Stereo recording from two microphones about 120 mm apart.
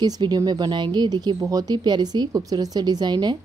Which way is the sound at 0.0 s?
35° right (ahead or behind).